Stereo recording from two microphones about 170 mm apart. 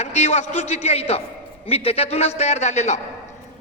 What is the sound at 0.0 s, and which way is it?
A man's voice, 40° left (ahead or behind).